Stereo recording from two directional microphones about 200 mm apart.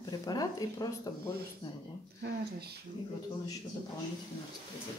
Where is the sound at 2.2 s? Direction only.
55° right (ahead or behind).